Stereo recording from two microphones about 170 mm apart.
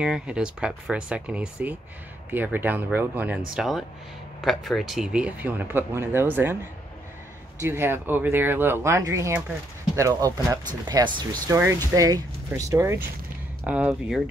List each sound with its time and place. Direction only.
0.0 s speech: 5° right (ahead or behind)